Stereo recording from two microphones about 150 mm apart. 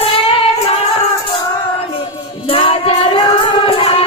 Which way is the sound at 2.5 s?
40° left (ahead or behind).